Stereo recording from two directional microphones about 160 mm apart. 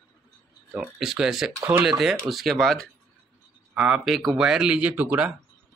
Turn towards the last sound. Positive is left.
turn(degrees=-10)  # may be behind; listen again after turning